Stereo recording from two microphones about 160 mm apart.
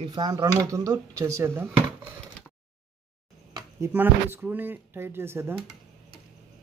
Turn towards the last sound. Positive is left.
turn(degrees=-15)  # may be behind; listen again after turning